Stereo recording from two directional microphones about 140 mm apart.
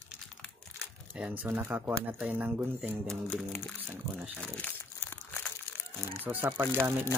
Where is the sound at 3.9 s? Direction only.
10° right (ahead or behind).